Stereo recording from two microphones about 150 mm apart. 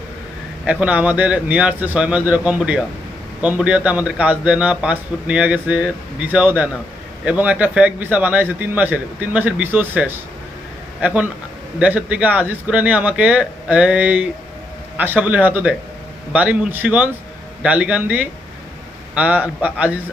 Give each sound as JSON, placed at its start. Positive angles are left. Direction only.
{"t": 0.6, "sound": "a man's voice", "side_deg": -10}